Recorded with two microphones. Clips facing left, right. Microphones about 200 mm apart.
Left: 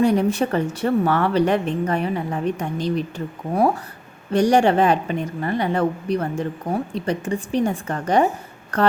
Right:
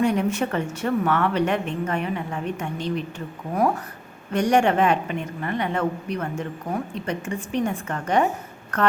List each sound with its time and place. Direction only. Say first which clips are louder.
0.0 s a woman's voice: left 4 dB; 35° left (ahead or behind)
4.3 s a woman's voice: left 3 dB; 35° left (ahead or behind)